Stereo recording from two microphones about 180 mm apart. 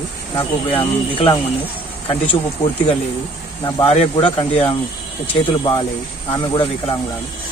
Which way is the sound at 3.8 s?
35° left (ahead or behind).